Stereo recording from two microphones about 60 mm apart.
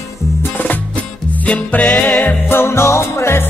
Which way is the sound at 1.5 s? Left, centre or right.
Left.